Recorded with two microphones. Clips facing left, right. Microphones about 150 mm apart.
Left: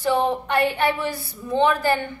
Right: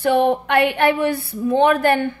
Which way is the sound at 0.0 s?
60° right (ahead or behind).